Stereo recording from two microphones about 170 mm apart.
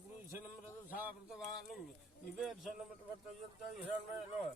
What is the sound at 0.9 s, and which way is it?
Speech, 5° right (ahead or behind).